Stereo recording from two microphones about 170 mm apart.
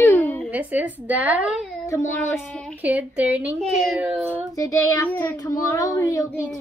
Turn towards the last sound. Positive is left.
turn(degrees=20)  # may be behind; listen again after turning